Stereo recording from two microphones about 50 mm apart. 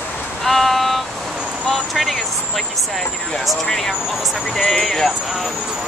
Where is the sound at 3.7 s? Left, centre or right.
Centre.